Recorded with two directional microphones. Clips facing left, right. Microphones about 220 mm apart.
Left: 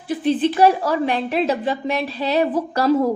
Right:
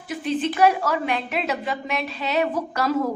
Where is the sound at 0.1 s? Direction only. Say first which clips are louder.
Left 6 dB; 30° left (ahead or behind).